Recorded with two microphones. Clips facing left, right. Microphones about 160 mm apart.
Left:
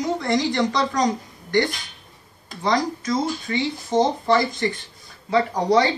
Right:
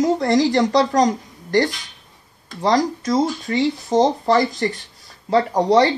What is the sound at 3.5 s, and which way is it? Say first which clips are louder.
Speech: right 3 dB; 40° right (ahead or behind).